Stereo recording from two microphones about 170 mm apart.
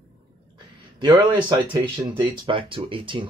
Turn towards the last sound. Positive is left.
turn(degrees=-30)  # may be behind; listen again after turning